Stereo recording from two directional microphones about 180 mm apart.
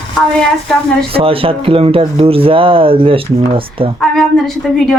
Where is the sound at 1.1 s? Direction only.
30° right (ahead or behind).